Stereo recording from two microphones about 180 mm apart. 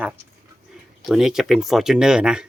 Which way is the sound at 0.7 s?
5° right (ahead or behind).